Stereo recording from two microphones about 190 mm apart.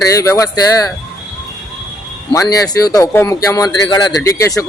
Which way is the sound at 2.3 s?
15° left (ahead or behind).